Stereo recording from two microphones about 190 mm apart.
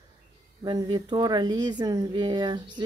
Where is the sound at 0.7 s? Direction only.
25° right (ahead or behind).